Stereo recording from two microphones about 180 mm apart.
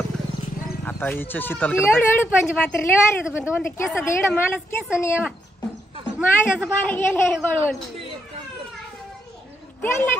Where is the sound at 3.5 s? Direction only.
15° left (ahead or behind).